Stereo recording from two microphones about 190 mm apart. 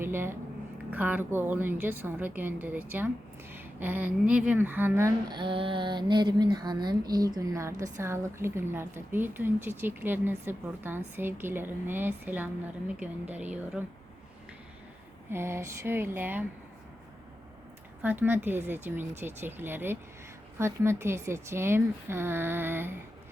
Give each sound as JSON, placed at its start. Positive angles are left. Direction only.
{"t": 0.0, "sound": "speech", "side_deg": -10}
{"t": 15.3, "sound": "speech", "side_deg": -15}
{"t": 18.0, "sound": "speech", "side_deg": -10}